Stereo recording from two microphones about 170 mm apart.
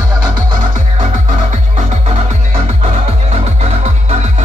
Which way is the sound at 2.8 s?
35° right (ahead or behind).